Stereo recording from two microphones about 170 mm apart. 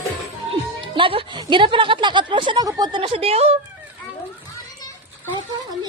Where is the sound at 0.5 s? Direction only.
30° right (ahead or behind).